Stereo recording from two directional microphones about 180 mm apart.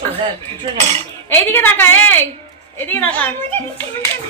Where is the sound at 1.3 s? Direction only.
10° left (ahead or behind).